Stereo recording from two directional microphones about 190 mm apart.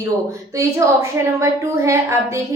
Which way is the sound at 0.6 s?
15° right (ahead or behind).